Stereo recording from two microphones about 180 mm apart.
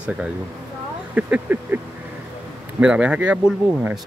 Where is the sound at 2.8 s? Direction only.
5° right (ahead or behind).